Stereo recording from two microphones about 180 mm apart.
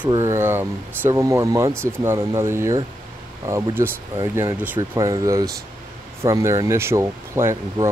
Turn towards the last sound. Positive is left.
turn(degrees=-15)  # may be behind; listen again after turning